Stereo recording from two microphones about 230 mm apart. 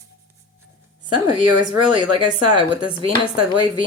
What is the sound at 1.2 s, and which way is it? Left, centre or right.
Speech, right.